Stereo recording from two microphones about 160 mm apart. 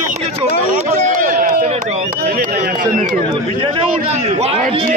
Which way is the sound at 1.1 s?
60° right (ahead or behind).